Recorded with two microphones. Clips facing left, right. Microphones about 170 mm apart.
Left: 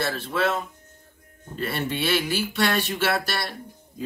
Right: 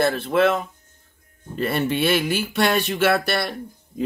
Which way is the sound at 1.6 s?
60° right (ahead or behind).